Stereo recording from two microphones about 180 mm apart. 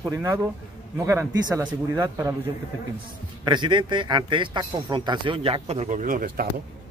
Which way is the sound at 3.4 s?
25° right (ahead or behind).